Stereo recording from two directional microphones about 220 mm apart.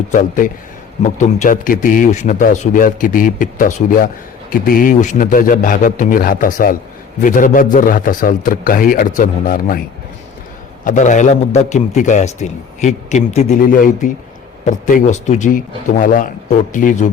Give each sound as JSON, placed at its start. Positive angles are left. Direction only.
{"t": 0.1, "sound": "a man's voice", "side_deg": 35}
{"t": 10.8, "sound": "a man's voice", "side_deg": 35}